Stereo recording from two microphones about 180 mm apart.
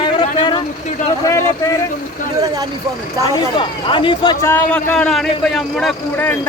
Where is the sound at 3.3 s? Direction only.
25° left (ahead or behind).